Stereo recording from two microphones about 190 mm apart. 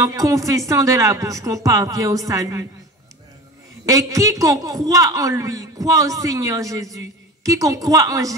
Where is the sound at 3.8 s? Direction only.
20° right (ahead or behind).